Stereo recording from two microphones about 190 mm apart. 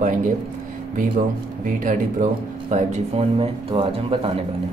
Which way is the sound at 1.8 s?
45° right (ahead or behind).